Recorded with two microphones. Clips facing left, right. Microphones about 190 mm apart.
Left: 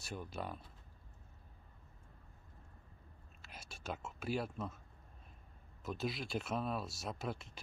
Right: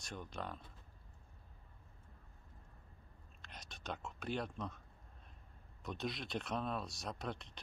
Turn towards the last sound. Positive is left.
turn(degrees=5)  # may be behind; listen again after turning